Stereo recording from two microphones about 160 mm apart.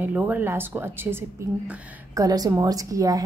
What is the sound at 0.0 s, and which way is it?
A woman's voice, 10° right (ahead or behind).